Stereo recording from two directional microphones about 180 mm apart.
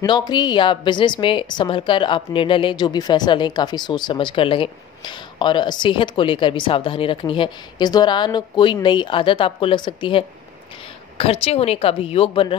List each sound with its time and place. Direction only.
0.0 s a woman's voice: 25° left (ahead or behind)